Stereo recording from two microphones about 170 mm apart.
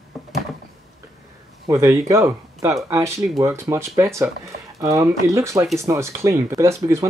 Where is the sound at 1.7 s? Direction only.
15° right (ahead or behind).